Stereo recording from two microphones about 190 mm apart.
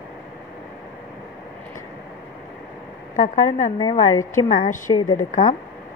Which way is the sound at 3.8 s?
20° left (ahead or behind).